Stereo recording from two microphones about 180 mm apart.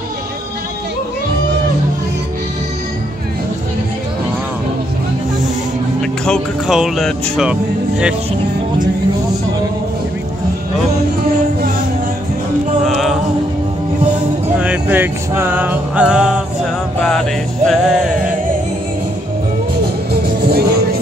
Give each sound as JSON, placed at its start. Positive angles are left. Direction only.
{"t": 5.9, "sound": "speech", "side_deg": 5}
{"t": 12.8, "sound": "music", "side_deg": 0}
{"t": 14.6, "sound": "music", "side_deg": -10}
{"t": 19.8, "sound": "music", "side_deg": -65}